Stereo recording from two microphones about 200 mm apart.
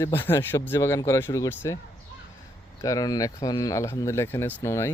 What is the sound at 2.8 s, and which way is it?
Speech, 20° left (ahead or behind).